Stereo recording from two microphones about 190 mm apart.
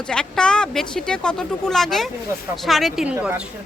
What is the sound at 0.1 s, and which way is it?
Speech, 5° left (ahead or behind).